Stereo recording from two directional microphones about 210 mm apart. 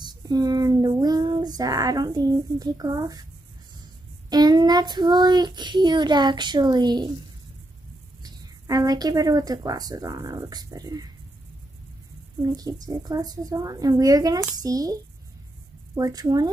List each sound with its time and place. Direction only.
0.0 s child singing: 20° right (ahead or behind)
4.3 s a child's voice: 20° right (ahead or behind)
8.2 s speech: 20° right (ahead or behind)
12.4 s speech: 15° right (ahead or behind)